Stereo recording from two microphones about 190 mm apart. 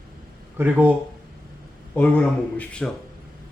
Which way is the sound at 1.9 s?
5° left (ahead or behind).